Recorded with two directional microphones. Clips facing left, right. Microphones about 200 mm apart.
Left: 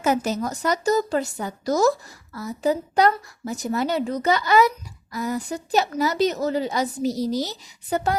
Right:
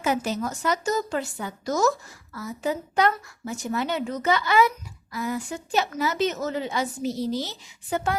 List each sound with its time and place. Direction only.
0.0 s a woman's voice: 40° left (ahead or behind)